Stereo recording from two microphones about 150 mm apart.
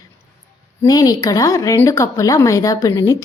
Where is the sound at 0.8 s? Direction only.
25° left (ahead or behind).